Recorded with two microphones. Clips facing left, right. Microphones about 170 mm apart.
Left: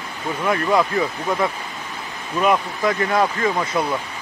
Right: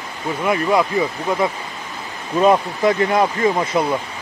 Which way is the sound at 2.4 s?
30° right (ahead or behind).